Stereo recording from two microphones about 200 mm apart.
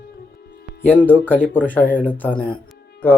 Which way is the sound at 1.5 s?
10° left (ahead or behind).